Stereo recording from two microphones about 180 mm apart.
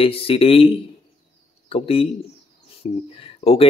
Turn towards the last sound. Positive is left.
turn(degrees=30)  # may be behind; listen again after turning